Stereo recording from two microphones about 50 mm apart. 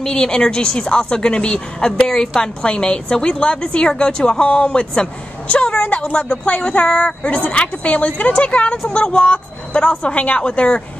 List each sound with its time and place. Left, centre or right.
0.0 s a woman's voice: centre
5.5 s a sound: left
5.9 s a woman's voice: left